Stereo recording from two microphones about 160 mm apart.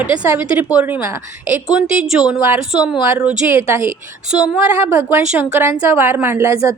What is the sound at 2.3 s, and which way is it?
Speech, 5° right (ahead or behind).